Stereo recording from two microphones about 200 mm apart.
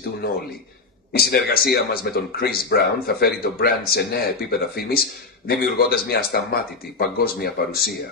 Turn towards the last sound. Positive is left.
turn(degrees=50)  # may be behind; listen again after turning